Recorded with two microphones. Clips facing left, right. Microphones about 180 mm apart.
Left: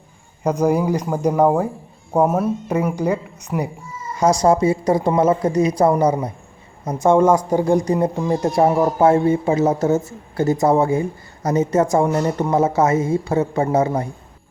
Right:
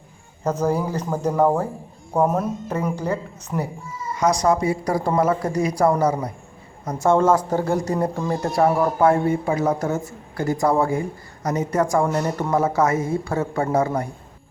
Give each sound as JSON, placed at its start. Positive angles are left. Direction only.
{"t": 0.4, "sound": "a woman's voice", "side_deg": 15}
{"t": 4.2, "sound": "a woman's voice", "side_deg": 30}